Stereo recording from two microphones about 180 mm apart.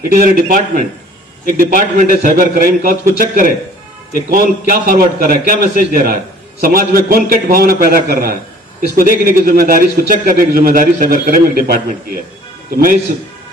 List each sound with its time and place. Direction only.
0.1 s a man's voice: 50° right (ahead or behind)